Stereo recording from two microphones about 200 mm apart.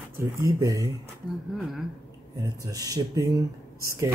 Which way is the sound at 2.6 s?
15° right (ahead or behind).